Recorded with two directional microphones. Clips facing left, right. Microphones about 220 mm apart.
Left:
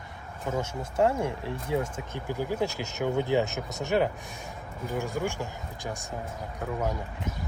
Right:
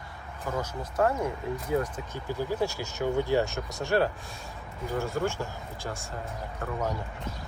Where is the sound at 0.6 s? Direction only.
25° left (ahead or behind).